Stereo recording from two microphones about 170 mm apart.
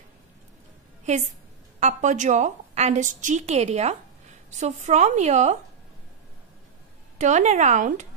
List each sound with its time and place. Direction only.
1.0 s a woman's voice: 45° right (ahead or behind)
7.2 s a woman's voice: 45° right (ahead or behind)